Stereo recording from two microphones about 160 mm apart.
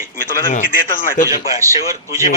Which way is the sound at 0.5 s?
60° left (ahead or behind).